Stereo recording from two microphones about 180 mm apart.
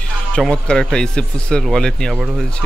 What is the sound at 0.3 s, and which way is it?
Speech, 5° left (ahead or behind).